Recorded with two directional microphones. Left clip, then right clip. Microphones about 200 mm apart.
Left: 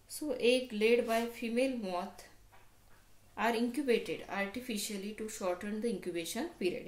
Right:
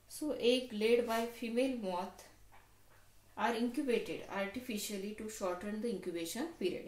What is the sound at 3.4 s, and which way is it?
Speech, 30° left (ahead or behind).